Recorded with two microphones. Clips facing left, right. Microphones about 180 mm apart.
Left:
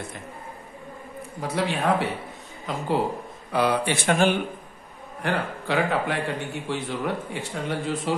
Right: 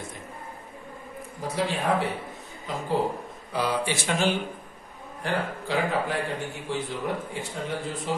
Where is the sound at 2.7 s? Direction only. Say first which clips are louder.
Left 2 dB; 65° left (ahead or behind).